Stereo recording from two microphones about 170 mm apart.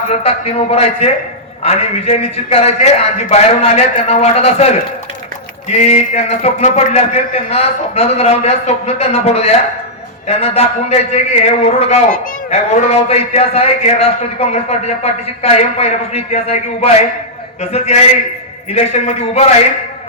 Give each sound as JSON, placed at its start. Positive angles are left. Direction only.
{"t": 0.1, "sound": "a man's voice", "side_deg": 35}